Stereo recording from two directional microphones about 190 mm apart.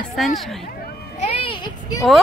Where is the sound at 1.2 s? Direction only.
30° left (ahead or behind).